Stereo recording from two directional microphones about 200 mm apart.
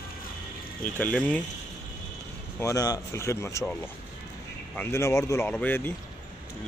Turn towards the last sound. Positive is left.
turn(degrees=10)  # may be behind; listen again after turning